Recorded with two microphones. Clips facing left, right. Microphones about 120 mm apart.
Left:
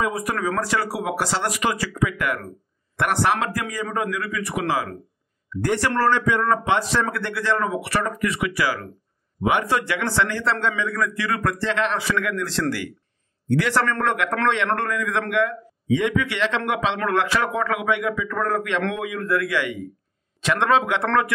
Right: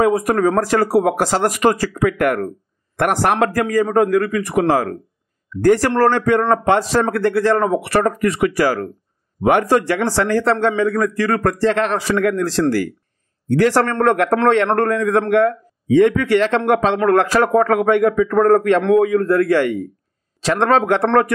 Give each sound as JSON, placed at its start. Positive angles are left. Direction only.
{"t": 0.0, "sound": "a man's voice", "side_deg": -45}